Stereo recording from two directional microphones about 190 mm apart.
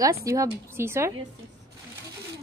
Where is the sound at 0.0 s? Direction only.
15° right (ahead or behind).